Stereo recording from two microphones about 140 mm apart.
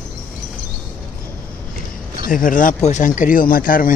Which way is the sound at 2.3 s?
75° left (ahead or behind).